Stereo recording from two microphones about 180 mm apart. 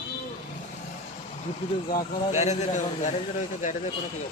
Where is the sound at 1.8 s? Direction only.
45° left (ahead or behind).